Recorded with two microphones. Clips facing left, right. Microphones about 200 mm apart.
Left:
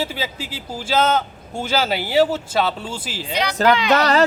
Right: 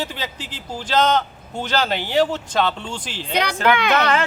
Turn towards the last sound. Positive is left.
turn(degrees=35)  # may be behind; listen again after turning